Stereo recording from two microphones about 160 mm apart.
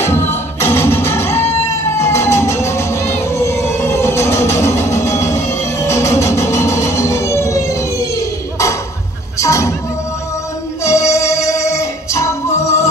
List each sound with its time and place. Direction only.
0.0 s music: 15° left (ahead or behind)
10.8 s music: 20° left (ahead or behind)